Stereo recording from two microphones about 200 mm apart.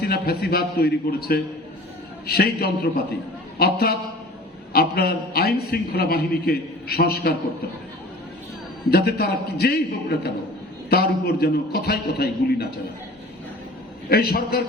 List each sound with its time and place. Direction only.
0.0 s a man's voice: 50° left (ahead or behind)
8.9 s a man's voice: 50° left (ahead or behind)
10.8 s a man's voice: 50° left (ahead or behind)
14.1 s a man's voice: 50° left (ahead or behind)